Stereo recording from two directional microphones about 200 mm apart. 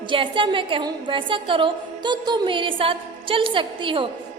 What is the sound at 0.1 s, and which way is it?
A woman's voice, 25° right (ahead or behind).